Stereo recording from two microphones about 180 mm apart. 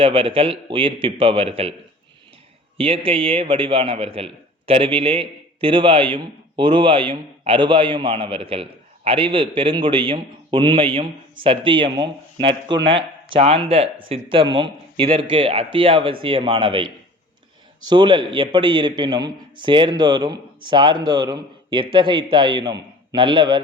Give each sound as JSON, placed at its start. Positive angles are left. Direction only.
{"t": 0.0, "sound": "a man's voice", "side_deg": -30}
{"t": 2.7, "sound": "a man's voice", "side_deg": -30}
{"t": 17.8, "sound": "a man's voice", "side_deg": -25}